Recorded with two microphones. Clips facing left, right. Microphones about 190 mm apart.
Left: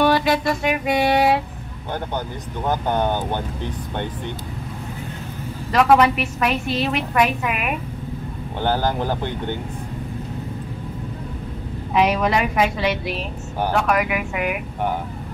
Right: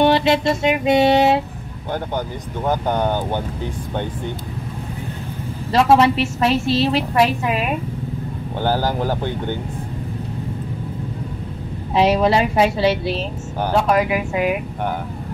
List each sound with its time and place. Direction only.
0.0 s a woman's voice: 25° right (ahead or behind)
5.7 s a woman's voice: 25° right (ahead or behind)
8.6 s speech: 5° right (ahead or behind)
11.9 s a woman's voice: 30° right (ahead or behind)